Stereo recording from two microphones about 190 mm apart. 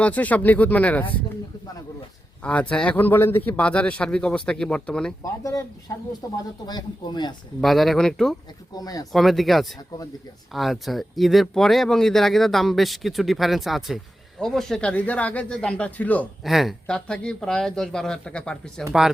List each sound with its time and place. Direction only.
0.0 s speech: 10° left (ahead or behind)
2.4 s speech: 5° left (ahead or behind)
5.2 s speech: 15° left (ahead or behind)
7.6 s speech: centre (ahead or behind)
8.7 s speech: 20° left (ahead or behind)
9.1 s speech: centre (ahead or behind)